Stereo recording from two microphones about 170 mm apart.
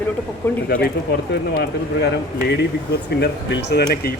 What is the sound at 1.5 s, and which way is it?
Speech, 70° left (ahead or behind).